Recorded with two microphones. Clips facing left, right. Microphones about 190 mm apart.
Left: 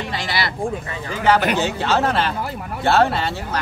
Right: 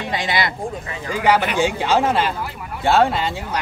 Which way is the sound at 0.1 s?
20° right (ahead or behind).